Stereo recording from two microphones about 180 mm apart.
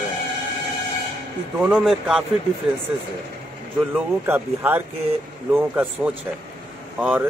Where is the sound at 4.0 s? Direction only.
10° right (ahead or behind).